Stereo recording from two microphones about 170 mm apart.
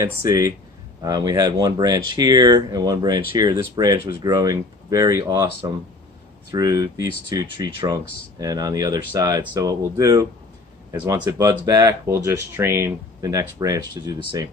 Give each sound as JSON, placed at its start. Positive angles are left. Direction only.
{"t": 0.0, "sound": "speech", "side_deg": -20}
{"t": 6.5, "sound": "speech", "side_deg": -20}